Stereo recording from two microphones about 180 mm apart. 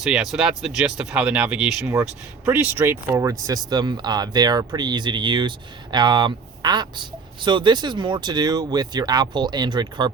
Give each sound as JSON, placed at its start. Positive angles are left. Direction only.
{"t": 0.0, "sound": "speech", "side_deg": 0}